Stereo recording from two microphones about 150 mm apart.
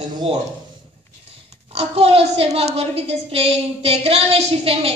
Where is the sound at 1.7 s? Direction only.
40° right (ahead or behind).